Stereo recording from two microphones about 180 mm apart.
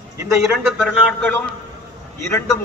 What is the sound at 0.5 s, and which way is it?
A man's voice, 10° left (ahead or behind).